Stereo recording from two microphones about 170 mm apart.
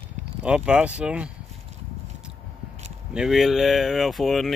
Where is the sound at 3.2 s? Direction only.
Centre (ahead or behind).